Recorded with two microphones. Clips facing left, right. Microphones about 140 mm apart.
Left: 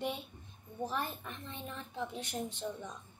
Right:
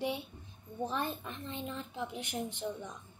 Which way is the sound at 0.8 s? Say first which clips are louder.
Right 2 dB; 20° right (ahead or behind).